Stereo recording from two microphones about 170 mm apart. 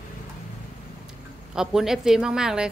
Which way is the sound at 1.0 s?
5° right (ahead or behind).